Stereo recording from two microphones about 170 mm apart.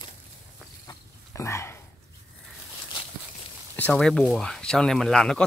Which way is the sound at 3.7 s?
5° left (ahead or behind).